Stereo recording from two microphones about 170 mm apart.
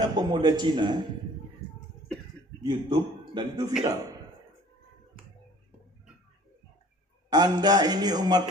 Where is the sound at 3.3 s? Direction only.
25° right (ahead or behind).